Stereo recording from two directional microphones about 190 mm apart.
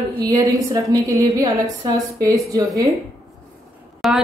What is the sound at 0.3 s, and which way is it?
A woman's voice, 15° right (ahead or behind).